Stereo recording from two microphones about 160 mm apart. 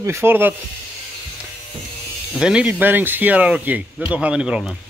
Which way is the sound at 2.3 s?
5° right (ahead or behind).